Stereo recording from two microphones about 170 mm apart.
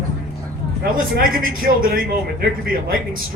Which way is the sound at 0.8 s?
60° right (ahead or behind).